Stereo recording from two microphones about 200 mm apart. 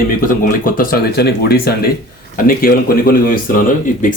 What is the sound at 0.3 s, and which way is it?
A man's voice, 45° left (ahead or behind).